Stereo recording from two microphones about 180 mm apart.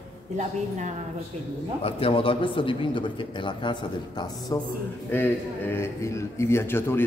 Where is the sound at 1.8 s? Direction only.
30° left (ahead or behind).